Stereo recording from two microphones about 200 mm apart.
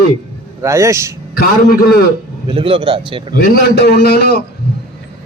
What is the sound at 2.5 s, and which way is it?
Speech, 25° right (ahead or behind).